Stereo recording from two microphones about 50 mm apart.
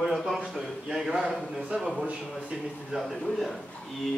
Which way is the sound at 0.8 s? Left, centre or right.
Centre.